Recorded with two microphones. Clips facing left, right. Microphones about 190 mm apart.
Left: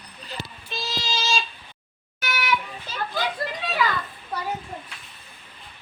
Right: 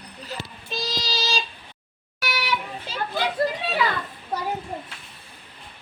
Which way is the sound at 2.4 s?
30° right (ahead or behind).